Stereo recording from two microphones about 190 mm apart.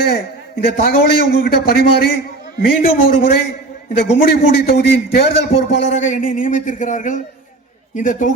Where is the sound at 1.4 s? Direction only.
50° left (ahead or behind).